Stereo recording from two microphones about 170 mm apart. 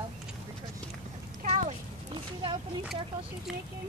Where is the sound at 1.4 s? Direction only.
40° right (ahead or behind).